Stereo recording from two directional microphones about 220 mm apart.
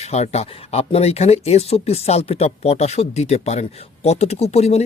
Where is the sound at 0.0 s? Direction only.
30° left (ahead or behind).